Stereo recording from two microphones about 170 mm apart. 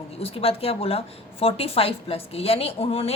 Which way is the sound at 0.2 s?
35° left (ahead or behind).